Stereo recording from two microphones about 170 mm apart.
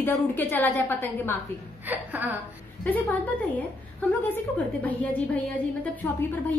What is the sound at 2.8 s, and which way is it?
A woman's voice, 10° left (ahead or behind).